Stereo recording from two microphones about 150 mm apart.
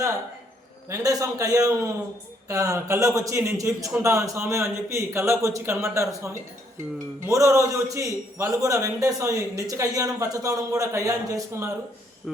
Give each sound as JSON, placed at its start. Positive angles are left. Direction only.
{"t": 0.9, "sound": "a man's voice", "side_deg": -20}